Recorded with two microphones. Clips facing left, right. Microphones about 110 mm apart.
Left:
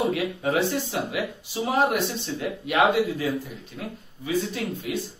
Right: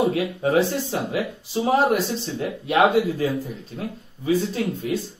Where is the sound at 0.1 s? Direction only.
35° right (ahead or behind).